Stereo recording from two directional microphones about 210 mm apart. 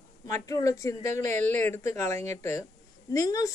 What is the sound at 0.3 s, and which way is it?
A woman's voice, 15° left (ahead or behind).